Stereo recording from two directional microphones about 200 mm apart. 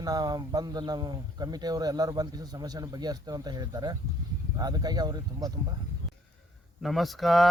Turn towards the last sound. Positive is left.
turn(degrees=0)  # may be behind; listen again after turning